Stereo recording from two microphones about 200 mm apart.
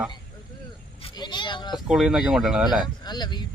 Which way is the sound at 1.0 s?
20° left (ahead or behind).